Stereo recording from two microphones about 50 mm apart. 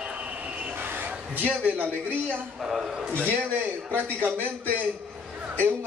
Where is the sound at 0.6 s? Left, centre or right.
Right.